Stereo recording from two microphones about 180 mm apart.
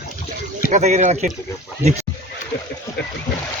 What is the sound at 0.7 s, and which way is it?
Speech, 40° right (ahead or behind).